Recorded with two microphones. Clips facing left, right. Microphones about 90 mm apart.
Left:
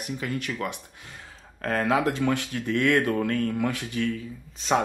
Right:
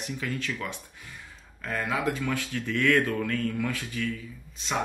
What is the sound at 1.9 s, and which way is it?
Speech, 35° left (ahead or behind).